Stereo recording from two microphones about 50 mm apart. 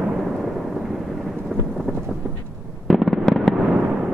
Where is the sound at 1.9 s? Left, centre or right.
Centre.